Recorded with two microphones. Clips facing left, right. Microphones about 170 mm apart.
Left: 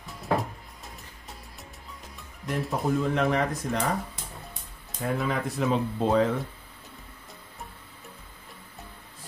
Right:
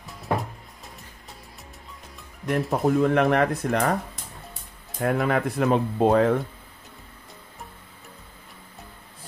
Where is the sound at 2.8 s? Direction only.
60° right (ahead or behind).